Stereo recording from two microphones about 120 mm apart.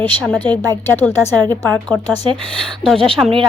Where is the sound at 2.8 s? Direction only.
5° left (ahead or behind).